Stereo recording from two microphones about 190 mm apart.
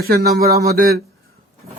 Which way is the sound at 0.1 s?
55° right (ahead or behind).